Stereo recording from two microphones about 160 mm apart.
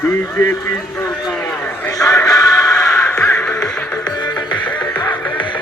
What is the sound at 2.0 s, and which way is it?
Music, 20° left (ahead or behind).